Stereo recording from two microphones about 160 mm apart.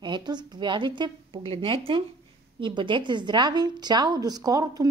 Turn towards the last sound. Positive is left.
turn(degrees=-25)  # may be behind; listen again after turning